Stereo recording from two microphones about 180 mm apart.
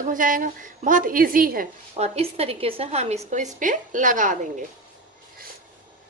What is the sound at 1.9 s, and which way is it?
A woman's voice, 35° right (ahead or behind).